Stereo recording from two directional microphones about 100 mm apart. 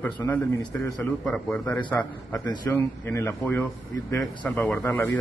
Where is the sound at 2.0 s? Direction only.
15° left (ahead or behind).